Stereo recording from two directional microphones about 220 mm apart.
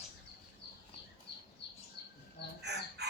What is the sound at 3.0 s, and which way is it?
Chicken, 50° right (ahead or behind).